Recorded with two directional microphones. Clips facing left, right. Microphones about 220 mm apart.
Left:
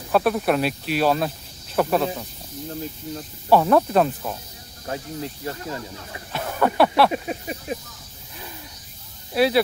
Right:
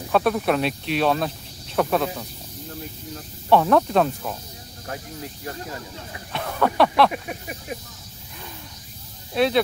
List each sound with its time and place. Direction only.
0.1 s speech: centre (ahead or behind)
3.4 s speech: 5° left (ahead or behind)
4.8 s speech: 25° left (ahead or behind)
6.3 s speech: 5° left (ahead or behind)
7.1 s speech: 25° left (ahead or behind)
9.3 s speech: 5° left (ahead or behind)